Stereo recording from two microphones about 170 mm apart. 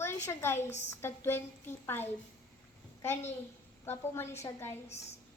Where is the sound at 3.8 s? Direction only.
15° left (ahead or behind).